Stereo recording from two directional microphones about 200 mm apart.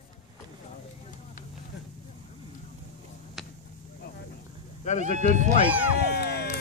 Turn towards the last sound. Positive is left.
turn(degrees=55)  # may be behind; listen again after turning